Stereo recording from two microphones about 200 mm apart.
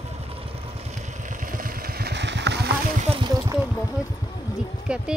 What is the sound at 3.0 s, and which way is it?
Speech, 25° right (ahead or behind).